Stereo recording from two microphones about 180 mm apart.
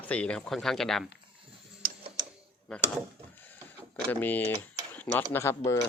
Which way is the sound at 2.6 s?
5° left (ahead or behind).